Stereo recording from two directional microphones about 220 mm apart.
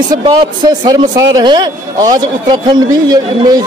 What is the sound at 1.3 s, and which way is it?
A man's voice, 20° right (ahead or behind).